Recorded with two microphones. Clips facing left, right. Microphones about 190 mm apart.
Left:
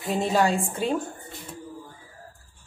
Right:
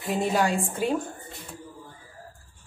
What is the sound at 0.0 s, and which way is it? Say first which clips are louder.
Speech: left 2 dB; 5° right (ahead or behind).